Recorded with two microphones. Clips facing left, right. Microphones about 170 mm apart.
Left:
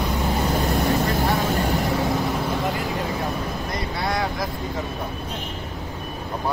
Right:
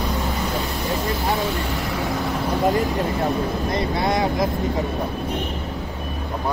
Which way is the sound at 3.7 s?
20° right (ahead or behind).